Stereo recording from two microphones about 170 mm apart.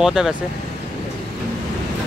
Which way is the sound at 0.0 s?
5° right (ahead or behind).